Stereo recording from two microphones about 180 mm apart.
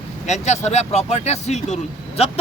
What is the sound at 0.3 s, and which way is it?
Speech, 40° left (ahead or behind).